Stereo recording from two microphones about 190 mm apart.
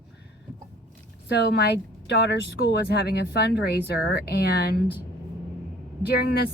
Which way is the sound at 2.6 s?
60° left (ahead or behind).